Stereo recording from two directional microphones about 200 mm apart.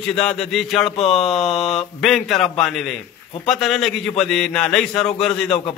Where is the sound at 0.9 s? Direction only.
30° left (ahead or behind).